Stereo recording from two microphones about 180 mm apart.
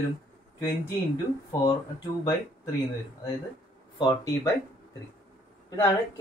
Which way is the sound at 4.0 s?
20° left (ahead or behind).